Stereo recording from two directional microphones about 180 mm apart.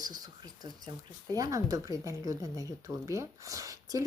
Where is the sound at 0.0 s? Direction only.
20° right (ahead or behind).